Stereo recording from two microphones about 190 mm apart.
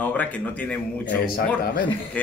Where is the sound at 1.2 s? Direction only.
50° left (ahead or behind).